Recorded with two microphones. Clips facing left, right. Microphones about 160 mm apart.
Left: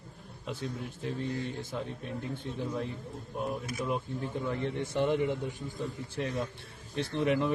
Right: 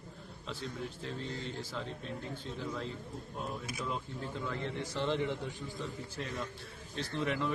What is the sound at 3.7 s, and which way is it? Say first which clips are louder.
A man's voice: left 5 dB; 20° left (ahead or behind).